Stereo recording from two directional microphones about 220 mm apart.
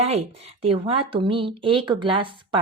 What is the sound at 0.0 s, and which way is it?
Speech, 30° right (ahead or behind).